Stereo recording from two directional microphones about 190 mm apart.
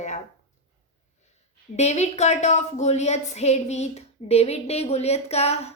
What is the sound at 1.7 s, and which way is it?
A woman's voice, 35° left (ahead or behind).